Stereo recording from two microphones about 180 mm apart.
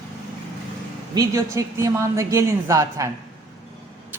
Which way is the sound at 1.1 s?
15° right (ahead or behind).